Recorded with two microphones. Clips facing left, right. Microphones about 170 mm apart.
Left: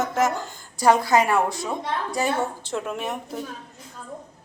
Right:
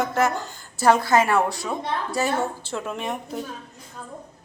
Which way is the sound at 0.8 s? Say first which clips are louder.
Even; 15° left (ahead or behind).